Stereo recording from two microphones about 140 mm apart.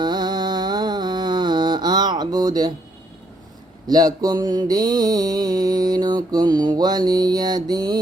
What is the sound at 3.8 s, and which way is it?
Mantra, 25° right (ahead or behind).